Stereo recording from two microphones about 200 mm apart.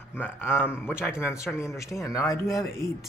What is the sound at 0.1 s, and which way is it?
Speech, 10° left (ahead or behind).